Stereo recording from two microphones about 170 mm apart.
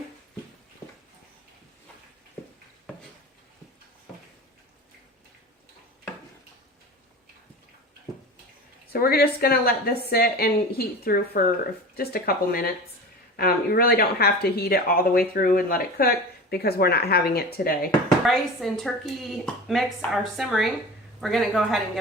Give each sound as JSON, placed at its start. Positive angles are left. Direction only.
{"t": 8.9, "sound": "speech", "side_deg": 60}
{"t": 18.3, "sound": "speech", "side_deg": 0}